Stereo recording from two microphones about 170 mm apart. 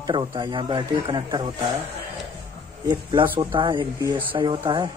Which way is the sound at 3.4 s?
30° right (ahead or behind).